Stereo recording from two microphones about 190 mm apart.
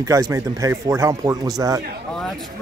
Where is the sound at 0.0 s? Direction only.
15° right (ahead or behind).